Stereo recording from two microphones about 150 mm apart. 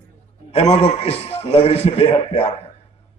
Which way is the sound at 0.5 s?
45° left (ahead or behind).